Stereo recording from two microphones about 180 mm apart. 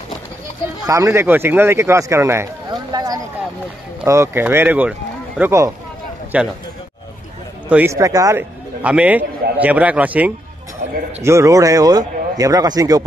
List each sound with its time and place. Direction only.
0.8 s a man's voice: 15° right (ahead or behind)
7.7 s a man's voice: 15° right (ahead or behind)